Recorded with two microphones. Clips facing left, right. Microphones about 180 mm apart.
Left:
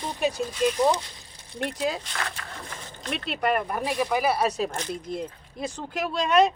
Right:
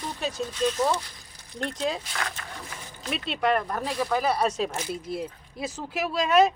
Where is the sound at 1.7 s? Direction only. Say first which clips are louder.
Even; 5° left (ahead or behind).